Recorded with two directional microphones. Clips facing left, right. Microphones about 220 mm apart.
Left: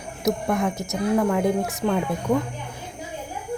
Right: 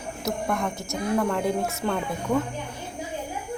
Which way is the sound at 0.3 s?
20° left (ahead or behind).